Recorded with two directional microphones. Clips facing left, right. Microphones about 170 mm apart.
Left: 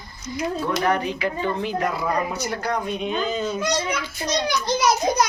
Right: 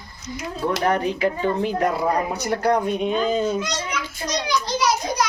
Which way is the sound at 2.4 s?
60° right (ahead or behind).